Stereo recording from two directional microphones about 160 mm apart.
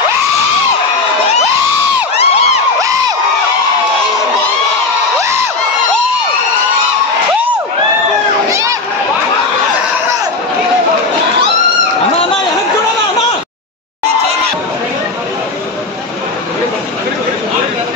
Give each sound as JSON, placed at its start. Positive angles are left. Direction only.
{"t": 2.1, "sound": "crowd", "side_deg": 40}
{"t": 8.5, "sound": "crowd", "side_deg": -20}